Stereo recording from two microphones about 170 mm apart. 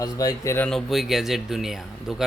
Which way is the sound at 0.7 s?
Centre (ahead or behind).